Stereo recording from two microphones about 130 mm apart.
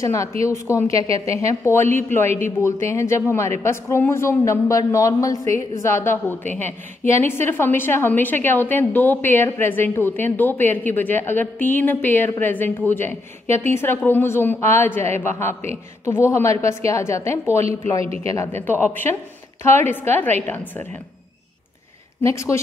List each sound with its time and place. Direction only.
0.0 s a man's voice: 25° left (ahead or behind)
22.2 s a man's voice: 20° left (ahead or behind)